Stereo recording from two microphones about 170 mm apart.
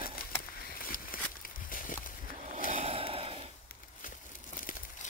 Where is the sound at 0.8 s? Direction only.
55° left (ahead or behind).